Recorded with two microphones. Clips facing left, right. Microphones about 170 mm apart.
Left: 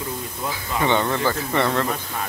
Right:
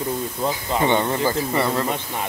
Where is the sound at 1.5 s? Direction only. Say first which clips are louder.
Even; 10° right (ahead or behind).